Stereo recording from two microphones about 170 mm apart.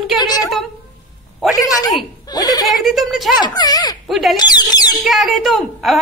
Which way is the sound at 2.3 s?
25° left (ahead or behind).